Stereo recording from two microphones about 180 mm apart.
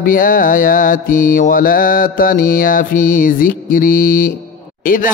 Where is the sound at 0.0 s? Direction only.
50° left (ahead or behind).